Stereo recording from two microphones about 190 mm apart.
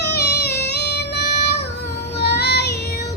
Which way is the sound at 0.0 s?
60° left (ahead or behind).